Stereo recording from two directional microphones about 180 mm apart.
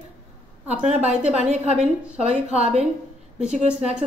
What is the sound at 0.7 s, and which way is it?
A woman's voice, 40° right (ahead or behind).